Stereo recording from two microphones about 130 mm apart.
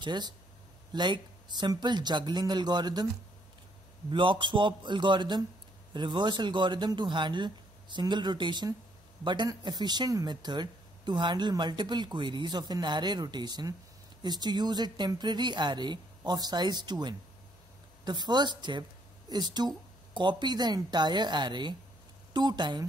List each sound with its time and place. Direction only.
0.0 s speech: 35° right (ahead or behind)
4.1 s a woman's voice: 40° right (ahead or behind)